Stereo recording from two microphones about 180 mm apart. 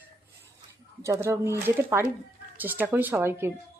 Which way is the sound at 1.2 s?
15° right (ahead or behind).